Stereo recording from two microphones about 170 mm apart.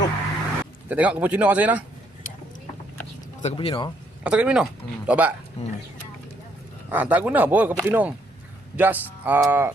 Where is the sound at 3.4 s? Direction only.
35° left (ahead or behind).